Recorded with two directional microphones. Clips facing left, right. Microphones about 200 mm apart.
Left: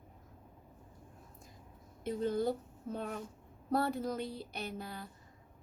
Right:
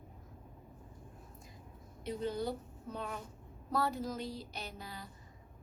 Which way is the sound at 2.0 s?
50° left (ahead or behind).